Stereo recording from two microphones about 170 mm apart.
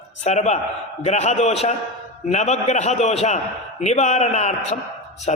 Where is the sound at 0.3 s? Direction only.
45° left (ahead or behind).